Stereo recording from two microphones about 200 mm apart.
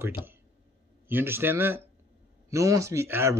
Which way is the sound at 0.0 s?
10° right (ahead or behind).